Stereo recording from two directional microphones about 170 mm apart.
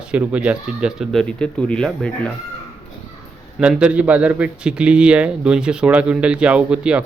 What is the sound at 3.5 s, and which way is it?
A man's voice, 5° right (ahead or behind).